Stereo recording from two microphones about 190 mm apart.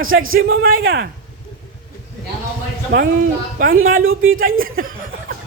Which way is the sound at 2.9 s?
60° right (ahead or behind).